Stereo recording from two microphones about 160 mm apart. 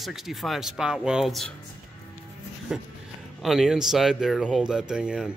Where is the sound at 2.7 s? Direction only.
5° right (ahead or behind).